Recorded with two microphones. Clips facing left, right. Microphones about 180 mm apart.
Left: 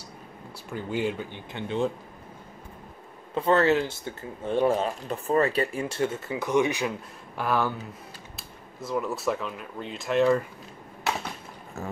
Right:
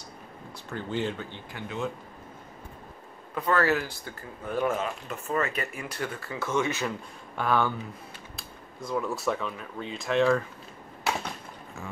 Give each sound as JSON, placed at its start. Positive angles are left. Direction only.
{"t": 0.7, "sound": "speech", "side_deg": 10}
{"t": 1.5, "sound": "speech", "side_deg": 25}
{"t": 3.3, "sound": "speech", "side_deg": 25}
{"t": 7.3, "sound": "speech", "side_deg": 5}